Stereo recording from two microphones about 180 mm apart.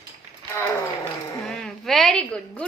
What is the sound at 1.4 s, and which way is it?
A woman's voice, centre (ahead or behind).